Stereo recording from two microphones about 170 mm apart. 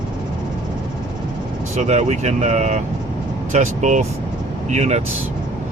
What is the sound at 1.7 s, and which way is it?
Speech, 40° right (ahead or behind).